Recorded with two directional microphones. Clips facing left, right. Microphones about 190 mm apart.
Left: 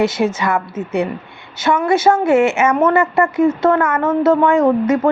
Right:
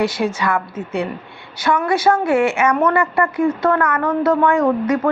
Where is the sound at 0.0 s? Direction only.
20° left (ahead or behind).